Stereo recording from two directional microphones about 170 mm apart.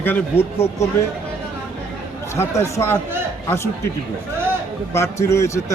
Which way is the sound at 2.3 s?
15° left (ahead or behind).